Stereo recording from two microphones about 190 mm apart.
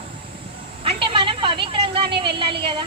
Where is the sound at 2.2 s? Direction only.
25° right (ahead or behind).